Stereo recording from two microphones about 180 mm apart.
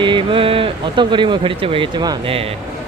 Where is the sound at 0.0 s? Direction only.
25° right (ahead or behind).